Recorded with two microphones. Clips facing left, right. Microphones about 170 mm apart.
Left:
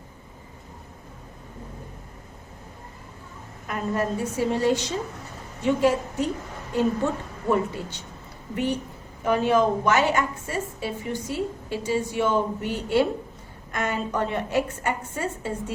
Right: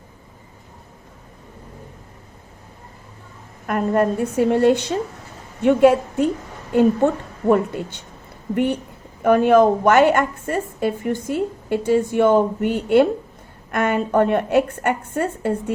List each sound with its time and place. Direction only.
3.7 s a woman's voice: 55° right (ahead or behind)